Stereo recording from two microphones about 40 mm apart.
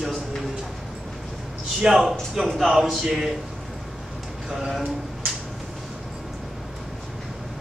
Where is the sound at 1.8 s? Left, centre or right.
Centre.